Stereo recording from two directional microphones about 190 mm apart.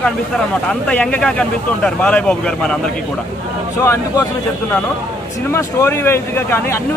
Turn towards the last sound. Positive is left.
turn(degrees=10)  # may be behind; listen again after turning